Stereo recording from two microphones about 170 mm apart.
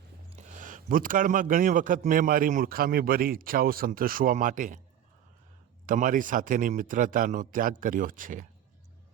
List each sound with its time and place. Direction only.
0.3 s speech: 45° right (ahead or behind)
5.8 s speech: 50° right (ahead or behind)